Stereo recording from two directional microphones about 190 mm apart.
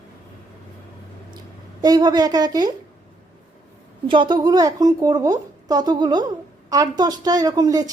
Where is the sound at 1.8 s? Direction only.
20° right (ahead or behind).